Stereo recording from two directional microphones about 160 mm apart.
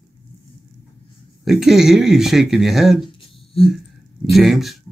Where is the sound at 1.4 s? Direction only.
Centre (ahead or behind).